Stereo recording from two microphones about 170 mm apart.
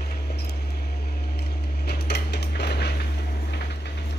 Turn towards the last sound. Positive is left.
turn(degrees=75)  # may be behind; listen again after turning